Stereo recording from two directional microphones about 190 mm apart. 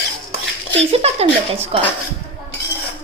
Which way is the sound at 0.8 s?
35° right (ahead or behind).